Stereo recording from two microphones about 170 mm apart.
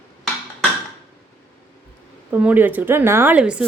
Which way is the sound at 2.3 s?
10° right (ahead or behind).